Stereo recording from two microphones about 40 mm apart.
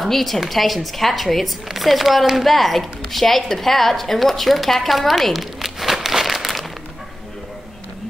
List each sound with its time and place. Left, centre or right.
0.0 s a woman's voice: centre
5.9 s crumpling: centre